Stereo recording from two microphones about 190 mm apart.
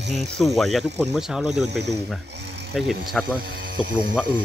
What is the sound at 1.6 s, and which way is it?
Speech, 65° right (ahead or behind).